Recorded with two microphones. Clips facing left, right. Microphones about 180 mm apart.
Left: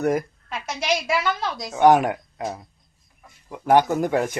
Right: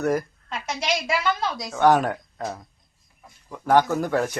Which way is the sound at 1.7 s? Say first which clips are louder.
Left 3 dB; 15° left (ahead or behind).